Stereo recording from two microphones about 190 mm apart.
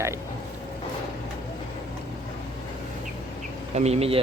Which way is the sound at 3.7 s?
35° right (ahead or behind).